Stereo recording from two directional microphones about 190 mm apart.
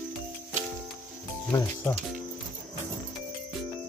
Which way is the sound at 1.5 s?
10° left (ahead or behind).